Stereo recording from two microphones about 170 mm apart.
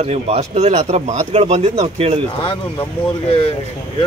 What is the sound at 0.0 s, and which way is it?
Speech, 40° right (ahead or behind).